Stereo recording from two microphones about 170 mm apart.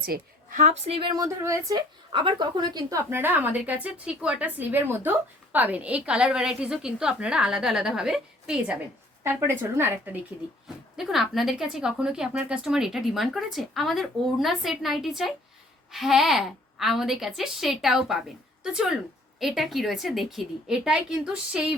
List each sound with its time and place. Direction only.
0.0 s a woman's voice: 60° right (ahead or behind)
0.6 s a woman's voice: 40° right (ahead or behind); by 10.2 s 15° right (ahead or behind)
10.9 s a woman's voice: centre (ahead or behind)